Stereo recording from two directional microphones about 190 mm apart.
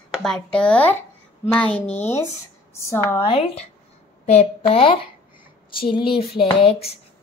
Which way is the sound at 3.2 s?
30° left (ahead or behind).